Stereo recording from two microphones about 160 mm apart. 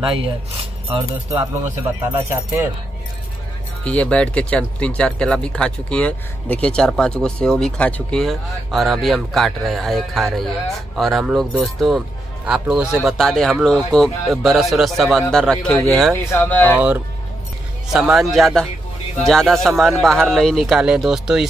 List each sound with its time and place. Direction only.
0.0 s speech: 35° right (ahead or behind)
2.0 s speech: 15° right (ahead or behind)
3.8 s speech: 10° left (ahead or behind)
16.7 s speech: 10° right (ahead or behind)